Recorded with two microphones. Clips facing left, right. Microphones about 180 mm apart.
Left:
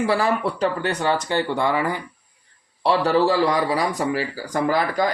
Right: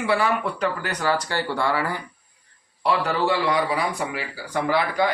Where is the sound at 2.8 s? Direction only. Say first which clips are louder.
Left 4 dB; 35° left (ahead or behind).